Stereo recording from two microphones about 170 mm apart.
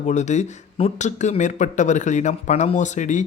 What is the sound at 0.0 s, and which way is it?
Speech, 45° left (ahead or behind).